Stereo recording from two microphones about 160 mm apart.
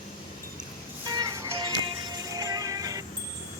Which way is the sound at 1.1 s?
25° right (ahead or behind).